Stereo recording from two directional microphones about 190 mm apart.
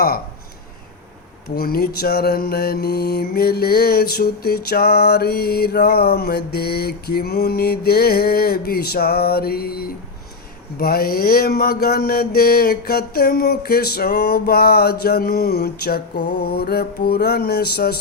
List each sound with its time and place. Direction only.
1.5 s mantra: 50° left (ahead or behind)